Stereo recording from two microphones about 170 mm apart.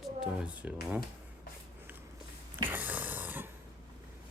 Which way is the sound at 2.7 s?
10° right (ahead or behind).